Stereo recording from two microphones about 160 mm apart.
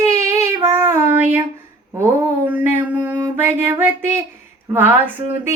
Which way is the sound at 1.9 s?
15° right (ahead or behind).